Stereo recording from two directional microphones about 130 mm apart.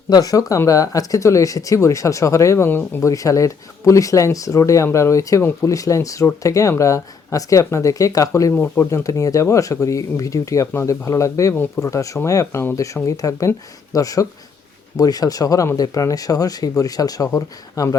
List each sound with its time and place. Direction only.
0.1 s speech: 30° left (ahead or behind)